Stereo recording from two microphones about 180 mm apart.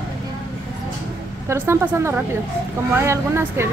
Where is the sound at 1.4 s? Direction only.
15° right (ahead or behind).